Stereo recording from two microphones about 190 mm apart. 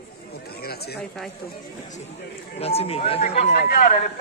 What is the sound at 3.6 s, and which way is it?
Speech, 50° left (ahead or behind).